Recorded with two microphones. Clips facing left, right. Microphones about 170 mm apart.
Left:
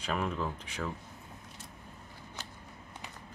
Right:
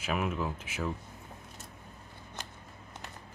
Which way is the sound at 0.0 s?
5° right (ahead or behind).